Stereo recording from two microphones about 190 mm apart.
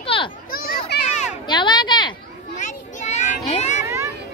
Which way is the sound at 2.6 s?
40° left (ahead or behind).